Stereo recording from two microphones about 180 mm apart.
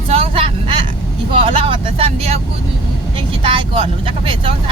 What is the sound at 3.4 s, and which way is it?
Speech, 30° right (ahead or behind).